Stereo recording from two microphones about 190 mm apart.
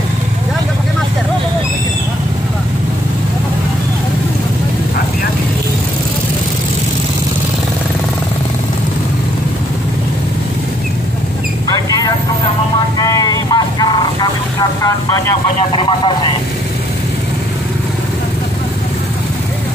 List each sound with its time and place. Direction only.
13.0 s vehicle: 20° left (ahead or behind)